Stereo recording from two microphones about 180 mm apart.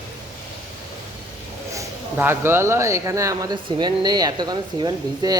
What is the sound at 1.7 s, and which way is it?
Speech, 10° right (ahead or behind).